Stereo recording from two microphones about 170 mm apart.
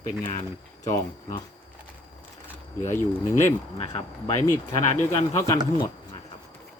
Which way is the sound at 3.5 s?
35° left (ahead or behind).